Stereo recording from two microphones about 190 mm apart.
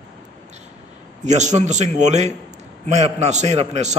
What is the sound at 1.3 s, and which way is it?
A man's voice, 40° right (ahead or behind).